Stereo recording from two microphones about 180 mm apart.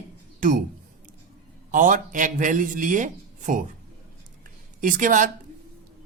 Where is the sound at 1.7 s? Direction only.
45° right (ahead or behind).